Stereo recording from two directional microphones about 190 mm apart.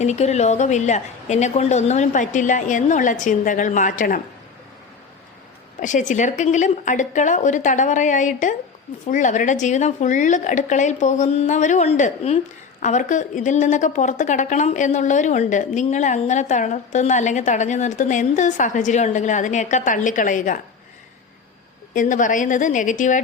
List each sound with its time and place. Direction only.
0.0 s a woman's voice: 35° left (ahead or behind)
5.8 s a woman's voice: 40° left (ahead or behind)
21.9 s a woman's voice: 45° left (ahead or behind)